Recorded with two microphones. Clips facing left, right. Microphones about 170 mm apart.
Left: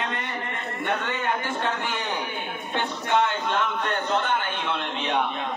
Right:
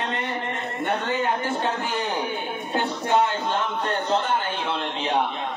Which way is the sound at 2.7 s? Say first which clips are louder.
Right 2 dB; 35° right (ahead or behind).